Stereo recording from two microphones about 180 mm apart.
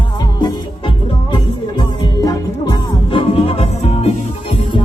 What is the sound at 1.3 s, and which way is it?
Music, 20° left (ahead or behind).